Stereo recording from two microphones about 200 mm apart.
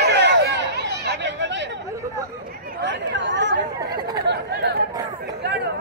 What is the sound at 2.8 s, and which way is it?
Chatter, 60° right (ahead or behind).